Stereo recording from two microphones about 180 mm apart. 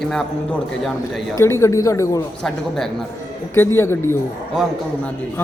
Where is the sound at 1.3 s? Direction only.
15° left (ahead or behind).